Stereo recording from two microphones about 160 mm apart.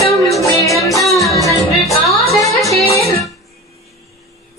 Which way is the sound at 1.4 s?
20° left (ahead or behind).